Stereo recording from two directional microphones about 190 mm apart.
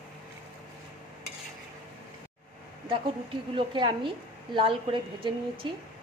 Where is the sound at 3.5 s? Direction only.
25° right (ahead or behind).